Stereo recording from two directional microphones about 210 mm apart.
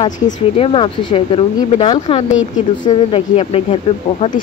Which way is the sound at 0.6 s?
25° left (ahead or behind).